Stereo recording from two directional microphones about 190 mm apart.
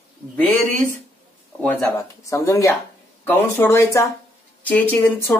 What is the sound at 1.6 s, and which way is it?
A man's voice, 10° left (ahead or behind).